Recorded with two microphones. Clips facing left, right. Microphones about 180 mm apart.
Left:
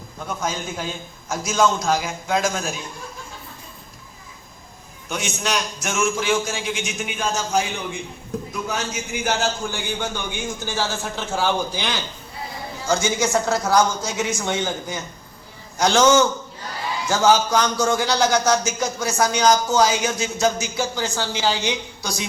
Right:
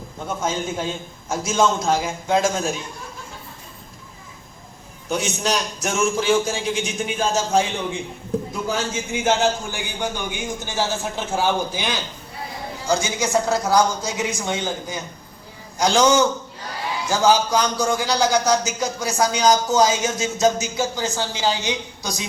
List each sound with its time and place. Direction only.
0.3 s speech: 25° right (ahead or behind)
5.0 s a man's voice: 35° right (ahead or behind); by 22.2 s 20° right (ahead or behind)